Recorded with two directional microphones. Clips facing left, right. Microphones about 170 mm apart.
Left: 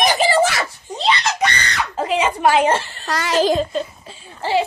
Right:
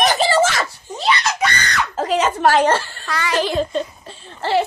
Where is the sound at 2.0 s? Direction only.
40° right (ahead or behind).